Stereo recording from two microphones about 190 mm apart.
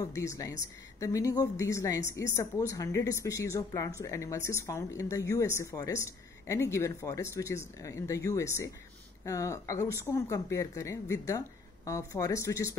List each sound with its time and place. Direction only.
0.0 s speech: 15° left (ahead or behind)